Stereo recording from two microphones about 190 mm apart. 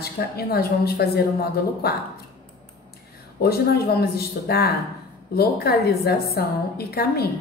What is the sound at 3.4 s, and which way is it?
A woman's voice, 55° left (ahead or behind).